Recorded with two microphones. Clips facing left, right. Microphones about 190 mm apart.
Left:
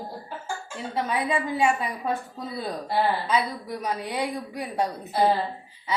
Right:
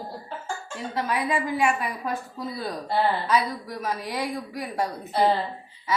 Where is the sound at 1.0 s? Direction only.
25° left (ahead or behind).